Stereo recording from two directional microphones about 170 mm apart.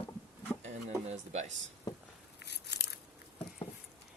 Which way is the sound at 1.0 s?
40° right (ahead or behind).